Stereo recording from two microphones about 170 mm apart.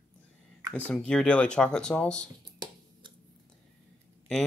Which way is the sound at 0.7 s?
5° left (ahead or behind).